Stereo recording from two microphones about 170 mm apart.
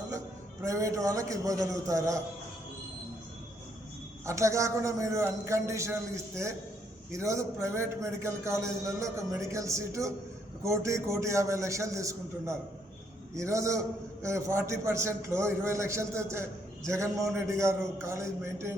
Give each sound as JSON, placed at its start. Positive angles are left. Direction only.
{"t": 0.6, "sound": "a man's voice", "side_deg": -20}
{"t": 4.3, "sound": "a man's voice", "side_deg": -15}